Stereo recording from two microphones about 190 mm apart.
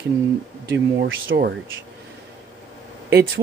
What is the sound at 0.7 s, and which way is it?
Speech, 80° right.